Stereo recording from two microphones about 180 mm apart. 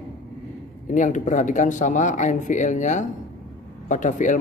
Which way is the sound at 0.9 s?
45° left (ahead or behind).